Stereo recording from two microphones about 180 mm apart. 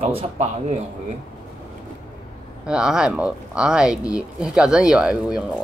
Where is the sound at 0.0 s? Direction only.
35° right (ahead or behind).